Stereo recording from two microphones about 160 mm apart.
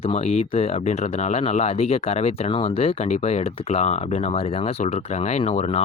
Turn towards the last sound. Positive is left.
turn(degrees=40)  # may be behind; listen again after turning